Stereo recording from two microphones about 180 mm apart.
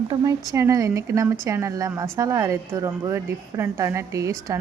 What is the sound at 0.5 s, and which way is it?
A woman's voice, 15° right (ahead or behind).